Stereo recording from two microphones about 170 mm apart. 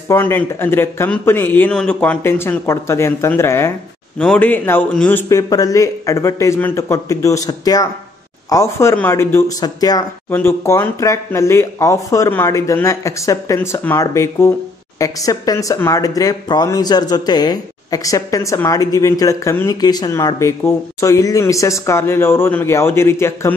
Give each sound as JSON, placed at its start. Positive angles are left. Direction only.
{"t": 0.1, "sound": "speech", "side_deg": 10}